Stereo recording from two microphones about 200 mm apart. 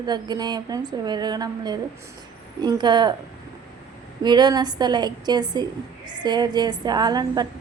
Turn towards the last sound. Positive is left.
turn(degrees=-20)  # may be behind; listen again after turning